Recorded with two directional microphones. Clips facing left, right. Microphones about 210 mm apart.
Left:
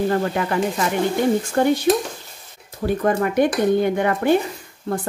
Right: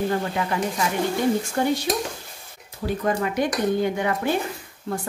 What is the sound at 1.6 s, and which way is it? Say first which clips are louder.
Speech: left 7 dB; 55° left (ahead or behind).